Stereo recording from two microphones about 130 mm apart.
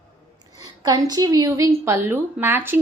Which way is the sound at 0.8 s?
30° right (ahead or behind).